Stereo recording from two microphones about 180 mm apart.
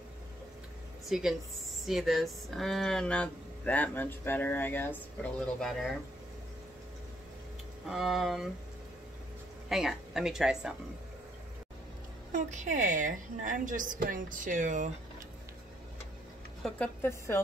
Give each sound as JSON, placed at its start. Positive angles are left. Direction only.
{"t": 1.0, "sound": "speech", "side_deg": 0}
{"t": 7.8, "sound": "speech", "side_deg": 0}
{"t": 9.7, "sound": "speech", "side_deg": 0}
{"t": 12.3, "sound": "a woman's voice", "side_deg": -40}
{"t": 16.6, "sound": "a woman's voice", "side_deg": 5}